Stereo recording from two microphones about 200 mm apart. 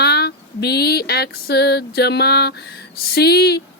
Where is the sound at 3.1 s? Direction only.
55° left (ahead or behind).